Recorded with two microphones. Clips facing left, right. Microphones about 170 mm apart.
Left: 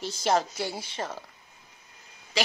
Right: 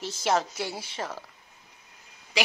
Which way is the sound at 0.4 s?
Centre (ahead or behind).